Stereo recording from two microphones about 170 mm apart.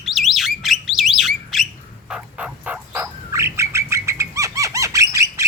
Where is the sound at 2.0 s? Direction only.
5° right (ahead or behind).